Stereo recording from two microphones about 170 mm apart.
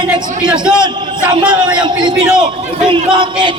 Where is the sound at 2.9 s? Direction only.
30° right (ahead or behind).